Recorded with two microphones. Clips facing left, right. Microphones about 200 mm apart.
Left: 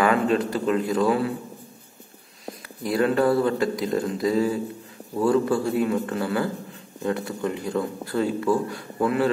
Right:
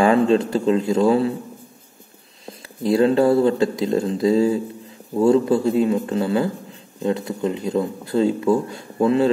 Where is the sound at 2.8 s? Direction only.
25° right (ahead or behind).